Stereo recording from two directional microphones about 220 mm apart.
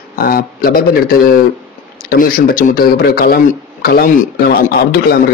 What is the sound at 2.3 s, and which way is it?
Speech, 40° left (ahead or behind).